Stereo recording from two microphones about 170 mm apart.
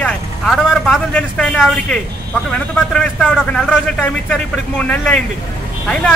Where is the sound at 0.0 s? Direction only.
5° left (ahead or behind).